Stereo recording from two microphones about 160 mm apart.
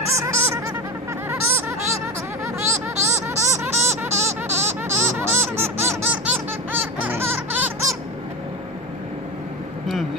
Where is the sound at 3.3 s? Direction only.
15° right (ahead or behind).